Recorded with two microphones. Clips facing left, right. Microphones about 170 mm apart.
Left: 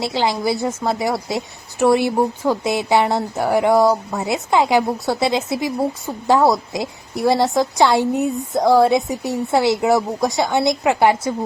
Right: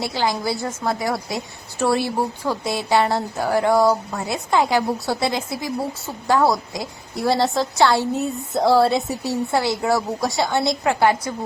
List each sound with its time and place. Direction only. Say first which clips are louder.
0.0 s speech: left 3 dB; 25° left (ahead or behind)
7.4 s a woman's voice: left 3 dB; centre (ahead or behind)
7.8 s a woman's voice: left 2 dB; 20° left (ahead or behind)